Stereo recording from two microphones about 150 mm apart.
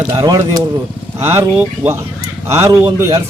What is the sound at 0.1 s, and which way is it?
Speech, 25° right (ahead or behind).